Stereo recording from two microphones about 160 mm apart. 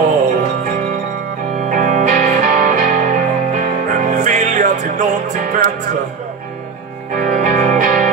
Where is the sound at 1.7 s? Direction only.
55° right (ahead or behind).